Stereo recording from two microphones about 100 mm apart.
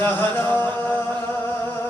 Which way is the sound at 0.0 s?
20° left (ahead or behind).